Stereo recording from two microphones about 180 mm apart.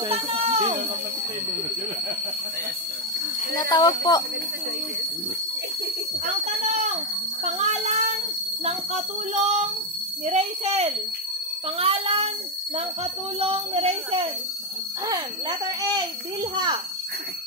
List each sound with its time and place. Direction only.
0.1 s a sound: 30° right (ahead or behind)
3.5 s speech: 20° left (ahead or behind)
6.2 s a child's voice: 40° right (ahead or behind)
15.0 s a child's voice: 20° right (ahead or behind)